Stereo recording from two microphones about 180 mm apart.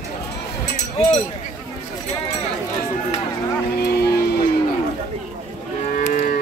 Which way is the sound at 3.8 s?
60° left (ahead or behind).